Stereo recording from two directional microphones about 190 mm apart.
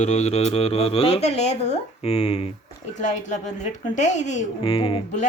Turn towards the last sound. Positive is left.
turn(degrees=30)  # may be behind; listen again after turning